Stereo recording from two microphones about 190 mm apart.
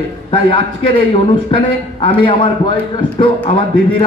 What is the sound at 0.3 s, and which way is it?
A man's voice, 25° left (ahead or behind).